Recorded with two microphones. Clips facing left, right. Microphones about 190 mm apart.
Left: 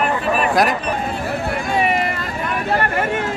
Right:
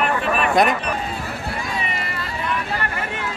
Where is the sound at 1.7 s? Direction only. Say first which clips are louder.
Left 9 dB; 55° left (ahead or behind).